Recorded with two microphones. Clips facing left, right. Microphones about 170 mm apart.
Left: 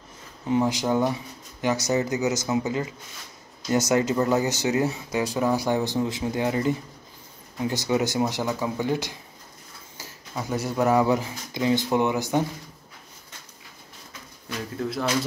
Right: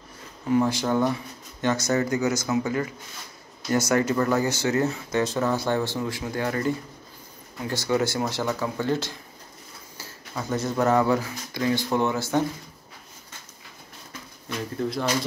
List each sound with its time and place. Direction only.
0.5 s speech: 20° left (ahead or behind)
14.8 s speech: centre (ahead or behind)